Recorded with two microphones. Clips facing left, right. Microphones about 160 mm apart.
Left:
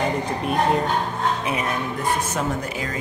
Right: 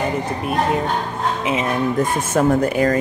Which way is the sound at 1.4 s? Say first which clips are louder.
Right 4 dB; 25° right (ahead or behind).